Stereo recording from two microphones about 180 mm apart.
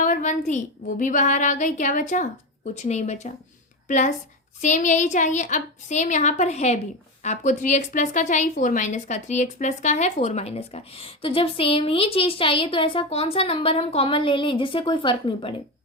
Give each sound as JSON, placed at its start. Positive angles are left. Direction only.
{"t": 0.0, "sound": "a woman's voice", "side_deg": 45}